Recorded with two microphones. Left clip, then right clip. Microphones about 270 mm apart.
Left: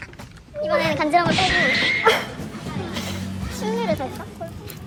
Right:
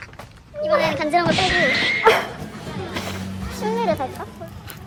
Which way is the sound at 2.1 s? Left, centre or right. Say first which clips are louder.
Right 5 dB; right.